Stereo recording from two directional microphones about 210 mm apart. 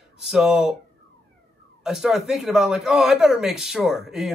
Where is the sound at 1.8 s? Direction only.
Centre (ahead or behind).